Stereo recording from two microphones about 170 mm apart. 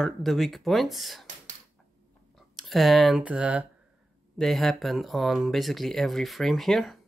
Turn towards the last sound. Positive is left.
turn(degrees=0)  # may be behind; listen again after turning